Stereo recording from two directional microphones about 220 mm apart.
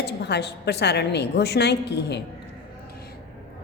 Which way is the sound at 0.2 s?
50° left (ahead or behind).